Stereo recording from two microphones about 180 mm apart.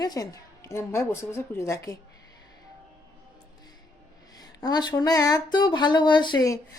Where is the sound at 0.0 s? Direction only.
20° left (ahead or behind).